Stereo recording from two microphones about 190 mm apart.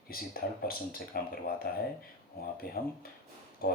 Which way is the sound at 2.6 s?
50° left (ahead or behind).